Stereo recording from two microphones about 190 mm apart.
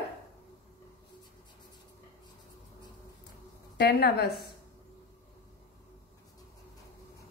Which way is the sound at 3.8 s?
60° left (ahead or behind).